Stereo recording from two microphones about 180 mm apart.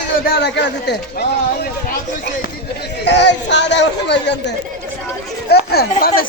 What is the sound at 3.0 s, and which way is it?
A man's voice, 80° left.